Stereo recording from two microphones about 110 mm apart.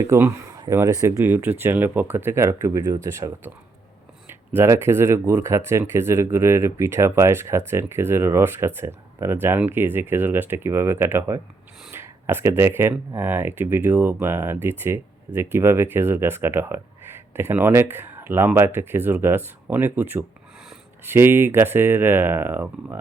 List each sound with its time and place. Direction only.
0.1 s speech: 25° right (ahead or behind)